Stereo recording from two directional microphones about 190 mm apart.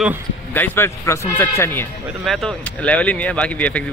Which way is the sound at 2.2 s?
Centre (ahead or behind).